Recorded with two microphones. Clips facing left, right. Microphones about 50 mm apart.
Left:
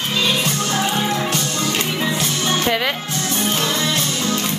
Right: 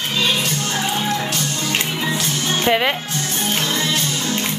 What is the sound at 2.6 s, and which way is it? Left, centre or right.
Speech, centre.